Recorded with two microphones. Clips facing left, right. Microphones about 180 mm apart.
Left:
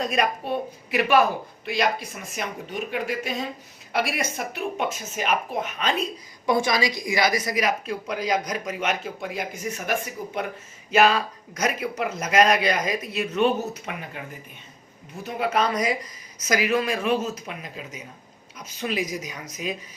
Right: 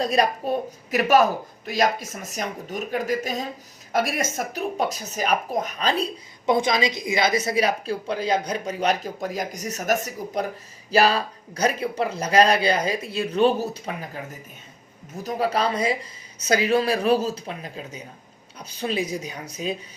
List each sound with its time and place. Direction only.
0.0 s a woman's voice: 35° right (ahead or behind)
6.4 s a woman's voice: 20° right (ahead or behind)